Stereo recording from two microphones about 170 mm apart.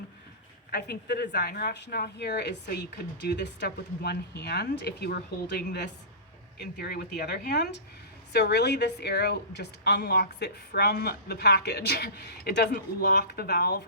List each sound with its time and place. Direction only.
0.7 s a woman's voice: 70° left (ahead or behind)